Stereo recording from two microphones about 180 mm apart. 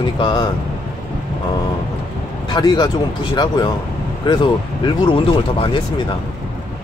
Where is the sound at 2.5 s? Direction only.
20° left (ahead or behind).